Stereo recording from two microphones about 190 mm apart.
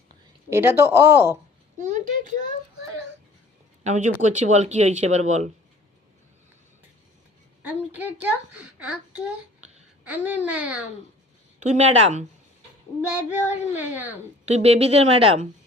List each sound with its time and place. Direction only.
0.5 s speech: 10° right (ahead or behind)
1.8 s speech: 40° right (ahead or behind)
3.8 s speech: 40° right (ahead or behind)
7.6 s a woman's voice: 10° right (ahead or behind)
10.0 s speech: 10° right (ahead or behind)
11.8 s speech: 35° right (ahead or behind)
13.1 s speech: 10° right (ahead or behind)
14.4 s speech: 35° right (ahead or behind)